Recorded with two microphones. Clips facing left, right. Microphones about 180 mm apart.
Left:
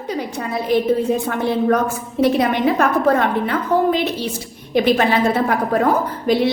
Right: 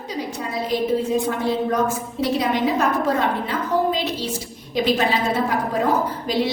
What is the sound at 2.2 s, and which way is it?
A woman's voice, 60° left (ahead or behind).